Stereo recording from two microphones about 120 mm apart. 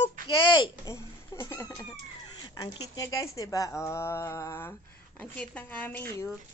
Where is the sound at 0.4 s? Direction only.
40° left (ahead or behind).